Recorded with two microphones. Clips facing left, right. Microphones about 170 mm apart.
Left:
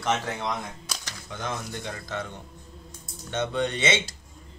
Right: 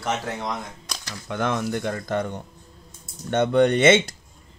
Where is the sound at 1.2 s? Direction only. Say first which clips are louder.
Right 9 dB; 60° right (ahead or behind).